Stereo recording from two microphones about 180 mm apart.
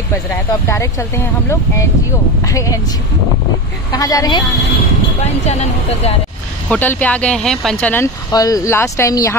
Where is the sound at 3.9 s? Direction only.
20° left (ahead or behind).